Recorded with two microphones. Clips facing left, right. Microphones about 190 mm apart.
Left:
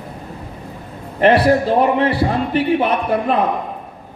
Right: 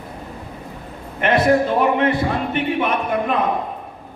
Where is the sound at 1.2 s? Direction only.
35° left (ahead or behind).